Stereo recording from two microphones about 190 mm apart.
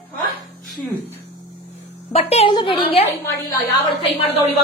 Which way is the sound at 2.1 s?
30° left (ahead or behind).